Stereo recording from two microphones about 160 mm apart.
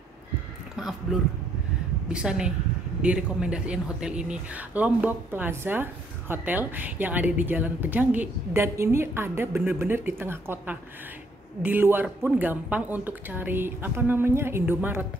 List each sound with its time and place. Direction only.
1.1 s a woman's voice: centre (ahead or behind)